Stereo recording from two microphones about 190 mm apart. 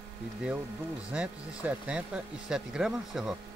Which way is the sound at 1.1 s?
5° right (ahead or behind).